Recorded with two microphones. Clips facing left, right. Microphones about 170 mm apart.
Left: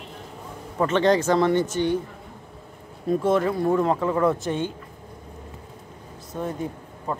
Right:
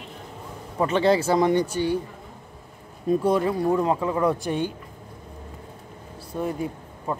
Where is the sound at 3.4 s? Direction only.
15° right (ahead or behind).